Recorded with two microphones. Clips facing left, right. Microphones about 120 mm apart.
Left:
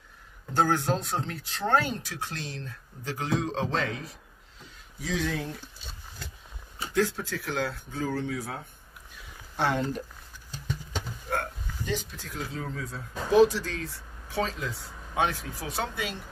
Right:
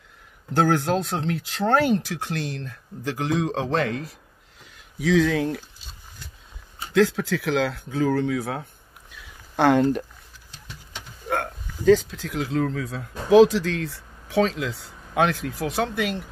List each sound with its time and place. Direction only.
0.6 s speech: 75° right (ahead or behind); by 4.0 s 60° right (ahead or behind)
4.9 s speech: 90° right
6.9 s speech: 90° right; by 10.0 s 60° right (ahead or behind)
12.1 s speech: 90° right; by 16.2 s 70° right (ahead or behind)